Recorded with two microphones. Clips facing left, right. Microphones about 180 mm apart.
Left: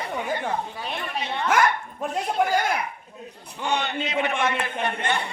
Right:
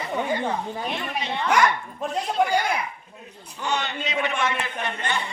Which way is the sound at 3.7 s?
55° left (ahead or behind).